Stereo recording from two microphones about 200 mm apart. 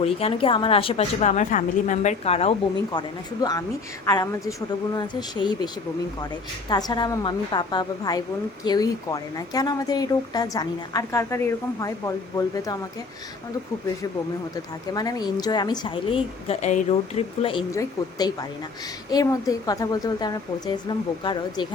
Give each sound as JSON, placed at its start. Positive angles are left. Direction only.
{"t": 0.0, "sound": "speech", "side_deg": 30}
{"t": 4.0, "sound": "speech", "side_deg": 15}
{"t": 14.5, "sound": "speech", "side_deg": 20}